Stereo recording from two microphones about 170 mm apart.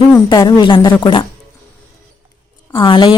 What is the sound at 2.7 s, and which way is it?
Speech, 30° left (ahead or behind).